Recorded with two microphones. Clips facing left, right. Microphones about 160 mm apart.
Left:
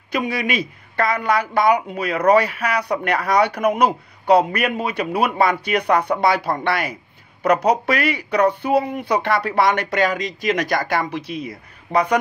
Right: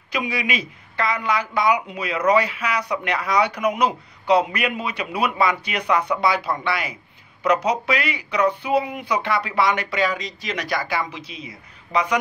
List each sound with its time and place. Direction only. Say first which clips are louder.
0.1 s a woman's voice: left 3 dB; 55° left (ahead or behind)
6.4 s speech: left 3 dB; 45° left (ahead or behind)
7.4 s a woman's voice: left 3 dB; 55° left (ahead or behind)